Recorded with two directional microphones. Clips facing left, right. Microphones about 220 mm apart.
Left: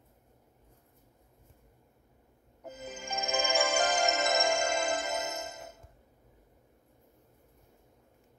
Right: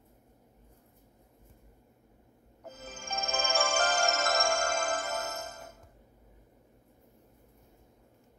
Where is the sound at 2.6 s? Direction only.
15° left (ahead or behind).